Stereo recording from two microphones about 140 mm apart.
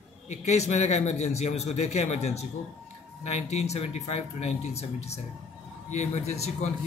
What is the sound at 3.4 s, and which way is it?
Speech, 50° left (ahead or behind).